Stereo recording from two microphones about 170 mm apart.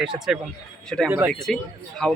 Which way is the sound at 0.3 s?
5° right (ahead or behind).